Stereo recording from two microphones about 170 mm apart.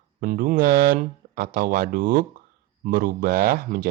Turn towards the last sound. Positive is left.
turn(degrees=-60)  # may be behind; listen again after turning